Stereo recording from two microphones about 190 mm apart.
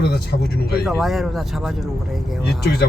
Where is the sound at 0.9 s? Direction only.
Centre (ahead or behind).